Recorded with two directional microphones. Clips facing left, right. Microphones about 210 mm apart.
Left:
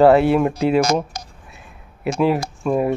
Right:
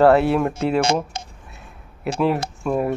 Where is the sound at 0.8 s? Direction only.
25° right (ahead or behind).